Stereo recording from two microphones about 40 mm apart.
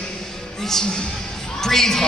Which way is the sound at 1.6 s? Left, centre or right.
Centre.